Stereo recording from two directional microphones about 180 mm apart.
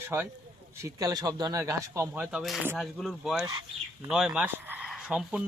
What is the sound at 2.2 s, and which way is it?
Speech, centre (ahead or behind).